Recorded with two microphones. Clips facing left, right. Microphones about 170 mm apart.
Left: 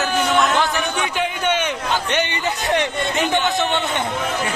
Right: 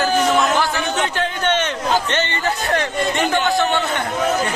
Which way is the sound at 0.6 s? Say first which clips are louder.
Right 1 dB; 15° left (ahead or behind).